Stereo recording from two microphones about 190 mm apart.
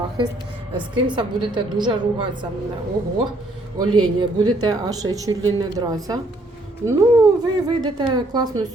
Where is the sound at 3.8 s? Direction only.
20° right (ahead or behind).